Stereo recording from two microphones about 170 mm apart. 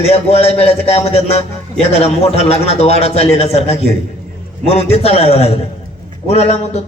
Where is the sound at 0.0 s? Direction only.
40° left (ahead or behind).